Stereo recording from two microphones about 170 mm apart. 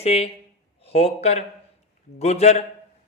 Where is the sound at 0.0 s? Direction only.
35° left (ahead or behind).